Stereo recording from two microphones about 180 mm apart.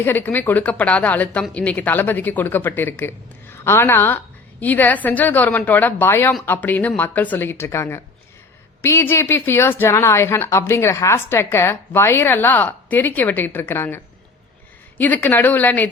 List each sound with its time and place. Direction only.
0.0 s a woman's voice: 10° left (ahead or behind)